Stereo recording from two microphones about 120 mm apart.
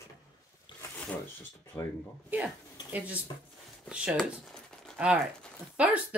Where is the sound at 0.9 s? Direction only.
15° left (ahead or behind).